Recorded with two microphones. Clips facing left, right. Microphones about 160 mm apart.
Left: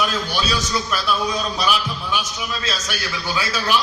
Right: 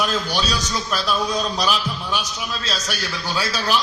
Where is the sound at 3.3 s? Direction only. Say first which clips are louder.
Left 1 dB; 35° right (ahead or behind).